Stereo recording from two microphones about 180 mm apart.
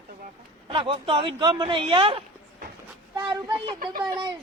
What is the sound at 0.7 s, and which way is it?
Speech, 30° right (ahead or behind).